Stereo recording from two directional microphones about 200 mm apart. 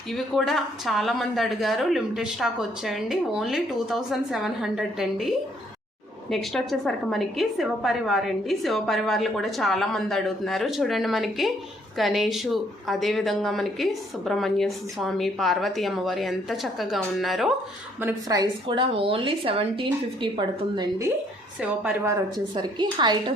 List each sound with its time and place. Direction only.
0.1 s speech: centre (ahead or behind)
6.3 s speech: centre (ahead or behind)
18.0 s a woman's voice: 20° right (ahead or behind)
21.6 s a woman's voice: 10° right (ahead or behind)